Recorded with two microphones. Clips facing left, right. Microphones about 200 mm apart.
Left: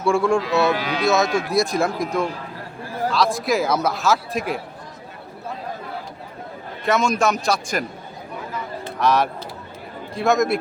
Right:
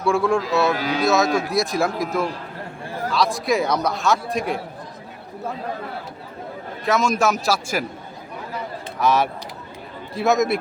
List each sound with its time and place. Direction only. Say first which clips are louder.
0.0 s speech: left 1 dB; centre (ahead or behind)
0.8 s speech: right 2 dB; 40° right (ahead or behind)
1.0 s speech: even; centre (ahead or behind)
6.8 s speech: even; centre (ahead or behind)
9.0 s speech: even; centre (ahead or behind)